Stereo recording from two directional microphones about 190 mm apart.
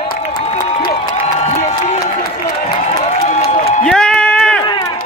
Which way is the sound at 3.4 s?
30° left (ahead or behind).